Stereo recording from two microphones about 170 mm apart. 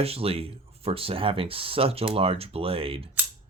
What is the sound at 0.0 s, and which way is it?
Speech, 35° right (ahead or behind).